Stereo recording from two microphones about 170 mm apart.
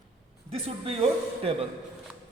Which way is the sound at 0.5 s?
35° right (ahead or behind).